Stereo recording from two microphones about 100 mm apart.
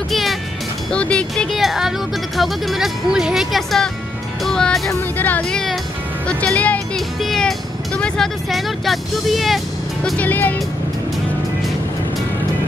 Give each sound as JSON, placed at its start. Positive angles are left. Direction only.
{"t": 0.1, "sound": "music", "side_deg": 0}
{"t": 0.9, "sound": "speech", "side_deg": 10}
{"t": 5.1, "sound": "speech", "side_deg": 15}
{"t": 7.2, "sound": "speech", "side_deg": 0}
{"t": 10.1, "sound": "speech", "side_deg": 15}